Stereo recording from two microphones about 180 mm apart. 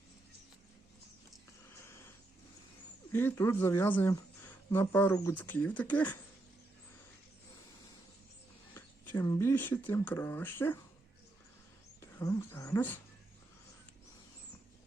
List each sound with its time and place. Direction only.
1.8 s a sound: 15° left (ahead or behind)
3.1 s speech: 10° left (ahead or behind)
9.1 s speech: 20° left (ahead or behind)
12.2 s speech: 15° left (ahead or behind)